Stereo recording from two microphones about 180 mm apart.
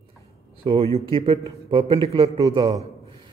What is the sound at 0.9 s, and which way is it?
A man's voice, 35° right (ahead or behind).